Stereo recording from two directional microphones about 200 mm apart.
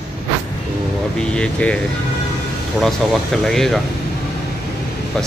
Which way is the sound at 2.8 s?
Centre (ahead or behind).